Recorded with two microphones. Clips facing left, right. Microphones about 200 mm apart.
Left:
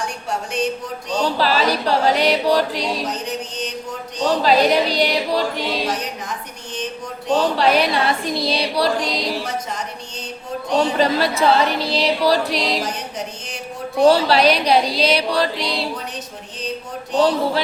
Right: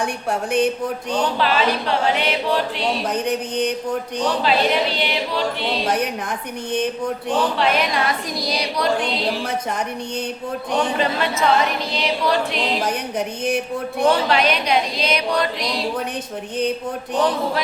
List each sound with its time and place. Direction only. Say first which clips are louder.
0.0 s music: right 3 dB; 55° right (ahead or behind)
1.2 s speech: left 2 dB; 35° left (ahead or behind)
3.1 s music: right 4 dB; 55° right (ahead or behind)
4.4 s speech: left 5 dB; 40° left (ahead or behind)
7.5 s speech: left 3 dB; 35° left (ahead or behind)
10.8 s speech: left 4 dB; 35° left (ahead or behind)
12.8 s music: right 4 dB; 55° right (ahead or behind)
14.0 s speech: left 4 dB; 35° left (ahead or behind)